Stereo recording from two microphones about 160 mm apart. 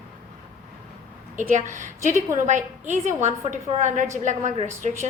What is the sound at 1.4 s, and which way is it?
A woman's voice, 50° right (ahead or behind).